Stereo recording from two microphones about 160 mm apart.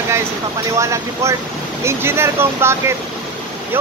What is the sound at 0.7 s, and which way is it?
Speech, 20° right (ahead or behind).